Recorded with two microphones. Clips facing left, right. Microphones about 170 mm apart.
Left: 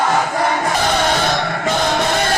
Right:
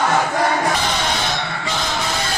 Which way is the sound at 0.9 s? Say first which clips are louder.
Left 5 dB; 50° left (ahead or behind).